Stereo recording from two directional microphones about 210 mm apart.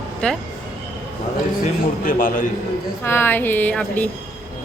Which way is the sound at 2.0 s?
40° left (ahead or behind).